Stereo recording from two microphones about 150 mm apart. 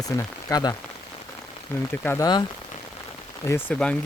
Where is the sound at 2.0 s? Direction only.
15° left (ahead or behind).